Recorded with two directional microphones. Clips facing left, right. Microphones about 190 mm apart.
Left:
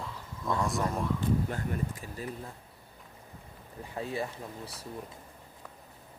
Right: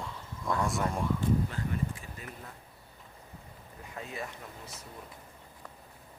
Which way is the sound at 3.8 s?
30° left (ahead or behind).